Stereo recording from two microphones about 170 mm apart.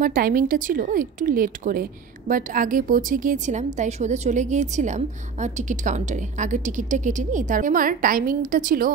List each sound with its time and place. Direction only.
0.0 s speech: 55° right (ahead or behind)